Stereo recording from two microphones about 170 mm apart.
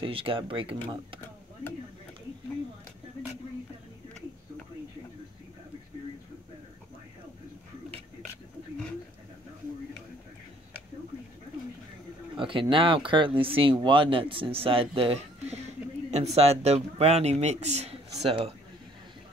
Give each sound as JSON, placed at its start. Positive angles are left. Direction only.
{"t": 0.0, "sound": "speech", "side_deg": -35}
{"t": 12.4, "sound": "speech", "side_deg": -30}